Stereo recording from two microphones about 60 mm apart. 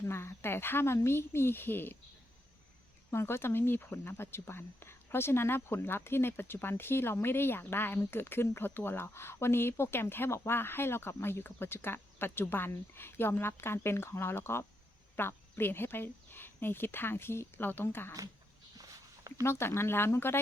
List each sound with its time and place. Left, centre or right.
0.0 s speech: left
3.1 s speech: left
19.4 s speech: left